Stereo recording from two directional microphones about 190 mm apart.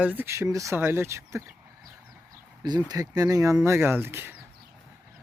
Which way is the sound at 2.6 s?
20° right (ahead or behind).